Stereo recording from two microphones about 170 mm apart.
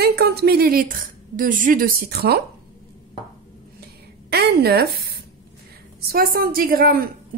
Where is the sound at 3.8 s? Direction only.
70° right (ahead or behind).